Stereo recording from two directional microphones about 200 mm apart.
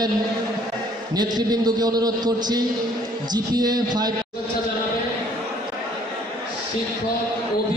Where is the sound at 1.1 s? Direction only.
20° right (ahead or behind).